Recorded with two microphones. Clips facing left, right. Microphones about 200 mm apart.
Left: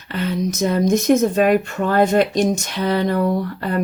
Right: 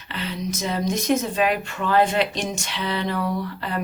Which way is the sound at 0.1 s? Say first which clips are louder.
Left 7 dB; 50° left (ahead or behind).